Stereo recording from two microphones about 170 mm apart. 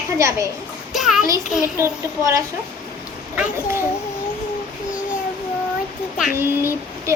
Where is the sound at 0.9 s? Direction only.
Centre (ahead or behind).